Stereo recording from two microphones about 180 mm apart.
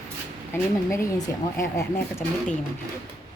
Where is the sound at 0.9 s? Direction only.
15° left (ahead or behind).